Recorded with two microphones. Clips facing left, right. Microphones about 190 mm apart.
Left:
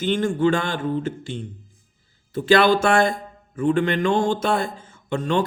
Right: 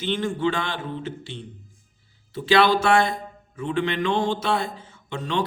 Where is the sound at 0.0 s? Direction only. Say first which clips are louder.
Left 4 dB; 45° left (ahead or behind).